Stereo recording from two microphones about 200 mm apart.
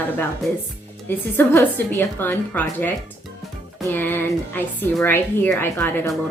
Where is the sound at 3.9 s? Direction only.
10° left (ahead or behind).